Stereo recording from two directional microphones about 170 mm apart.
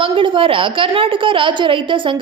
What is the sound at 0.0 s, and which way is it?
A woman's voice, 30° right (ahead or behind).